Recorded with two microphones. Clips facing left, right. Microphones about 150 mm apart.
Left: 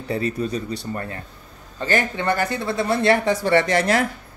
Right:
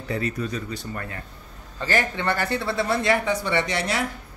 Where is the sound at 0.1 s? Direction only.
30° left (ahead or behind).